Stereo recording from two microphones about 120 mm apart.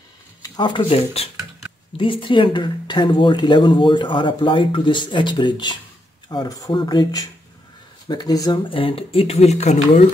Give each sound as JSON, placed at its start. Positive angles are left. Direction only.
{"t": 0.4, "sound": "speech", "side_deg": 40}
{"t": 2.0, "sound": "speech", "side_deg": 45}
{"t": 8.6, "sound": "speech", "side_deg": 50}